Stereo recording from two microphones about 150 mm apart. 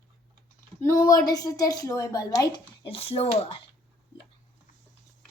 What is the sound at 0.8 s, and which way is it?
A woman's voice, 20° left (ahead or behind).